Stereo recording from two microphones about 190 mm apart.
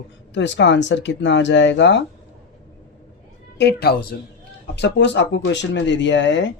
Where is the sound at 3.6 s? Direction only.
60° left (ahead or behind).